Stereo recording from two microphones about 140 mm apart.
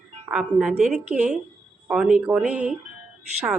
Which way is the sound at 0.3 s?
5° right (ahead or behind).